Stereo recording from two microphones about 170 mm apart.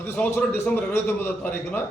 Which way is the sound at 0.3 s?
10° left (ahead or behind).